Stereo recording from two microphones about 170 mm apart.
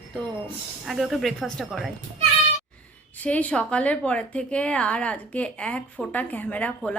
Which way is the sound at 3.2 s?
10° left (ahead or behind).